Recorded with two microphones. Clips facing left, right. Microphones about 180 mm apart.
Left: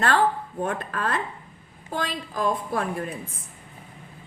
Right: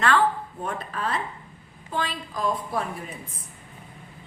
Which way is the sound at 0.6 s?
55° left (ahead or behind).